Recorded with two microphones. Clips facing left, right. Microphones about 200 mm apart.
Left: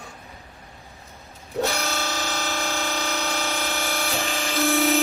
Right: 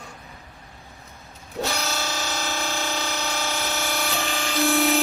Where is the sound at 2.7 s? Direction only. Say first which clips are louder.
Left 1 dB; 15° right (ahead or behind).